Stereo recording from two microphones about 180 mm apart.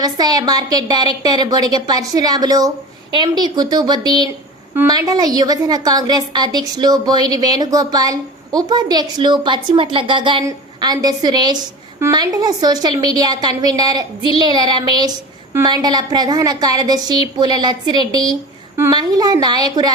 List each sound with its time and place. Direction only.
0.0 s a woman's voice: 20° right (ahead or behind)